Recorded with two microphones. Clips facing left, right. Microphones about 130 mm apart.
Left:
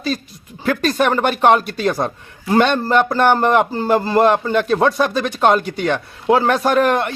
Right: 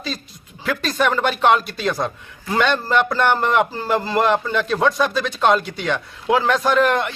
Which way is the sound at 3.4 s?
45° left (ahead or behind).